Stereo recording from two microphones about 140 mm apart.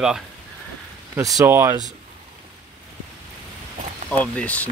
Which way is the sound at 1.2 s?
25° right (ahead or behind).